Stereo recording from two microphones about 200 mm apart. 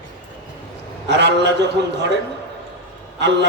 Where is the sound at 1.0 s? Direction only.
60° right (ahead or behind).